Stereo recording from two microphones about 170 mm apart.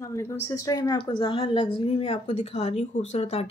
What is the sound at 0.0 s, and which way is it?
A woman's voice, 15° left (ahead or behind).